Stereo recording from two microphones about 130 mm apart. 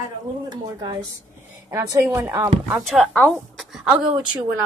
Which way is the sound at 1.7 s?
20° right (ahead or behind).